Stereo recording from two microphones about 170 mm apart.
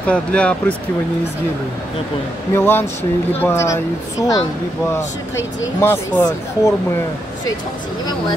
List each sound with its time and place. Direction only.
0.0 s speech: 5° left (ahead or behind)
2.5 s speech: 15° left (ahead or behind)